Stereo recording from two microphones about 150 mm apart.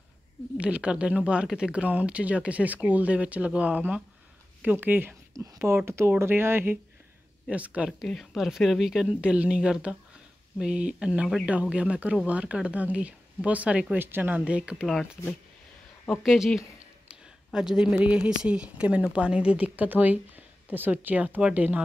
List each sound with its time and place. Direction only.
0.6 s speech: 10° right (ahead or behind)